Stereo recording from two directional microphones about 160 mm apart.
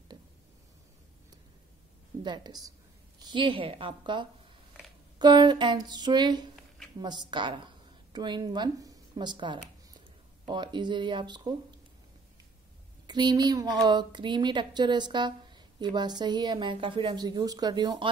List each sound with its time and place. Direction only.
2.2 s a woman's voice: 25° right (ahead or behind)
13.0 s a woman's voice: 25° right (ahead or behind)